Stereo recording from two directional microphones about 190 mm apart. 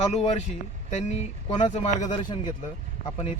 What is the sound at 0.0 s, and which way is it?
Speech, 35° left (ahead or behind).